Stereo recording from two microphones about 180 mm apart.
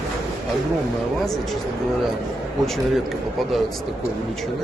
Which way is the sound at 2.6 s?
Centre (ahead or behind).